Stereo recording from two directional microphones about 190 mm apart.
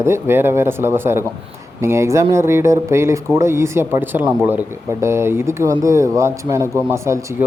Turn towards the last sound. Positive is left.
turn(degrees=-15)  # may be behind; listen again after turning